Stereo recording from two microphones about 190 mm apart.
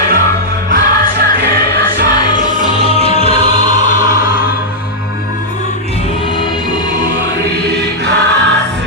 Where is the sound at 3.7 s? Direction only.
40° left (ahead or behind).